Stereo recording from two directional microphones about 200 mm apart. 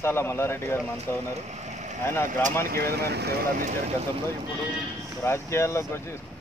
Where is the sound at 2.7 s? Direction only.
50° right (ahead or behind).